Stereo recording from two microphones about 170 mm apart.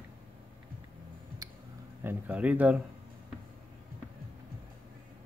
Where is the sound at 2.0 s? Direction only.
10° right (ahead or behind).